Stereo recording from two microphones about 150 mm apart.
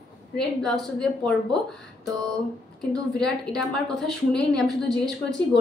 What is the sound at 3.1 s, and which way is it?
A woman's voice, 5° left (ahead or behind).